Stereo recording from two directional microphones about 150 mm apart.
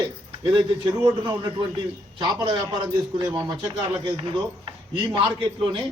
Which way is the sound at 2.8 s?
15° right (ahead or behind).